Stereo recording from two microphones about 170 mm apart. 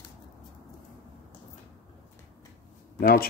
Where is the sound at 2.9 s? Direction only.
65° left (ahead or behind).